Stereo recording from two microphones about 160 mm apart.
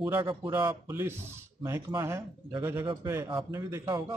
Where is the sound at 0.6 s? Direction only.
15° right (ahead or behind).